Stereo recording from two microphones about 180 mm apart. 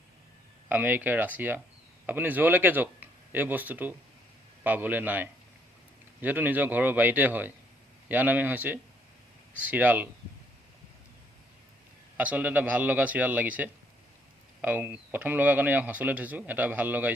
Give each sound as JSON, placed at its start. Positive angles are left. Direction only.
{"t": 0.7, "sound": "speech", "side_deg": -10}
{"t": 12.1, "sound": "speech", "side_deg": -10}